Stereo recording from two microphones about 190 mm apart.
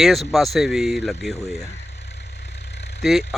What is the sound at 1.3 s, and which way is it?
Speech, 35° left (ahead or behind).